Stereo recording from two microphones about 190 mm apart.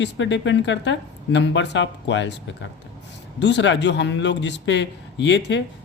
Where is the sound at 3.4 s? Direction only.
70° left (ahead or behind).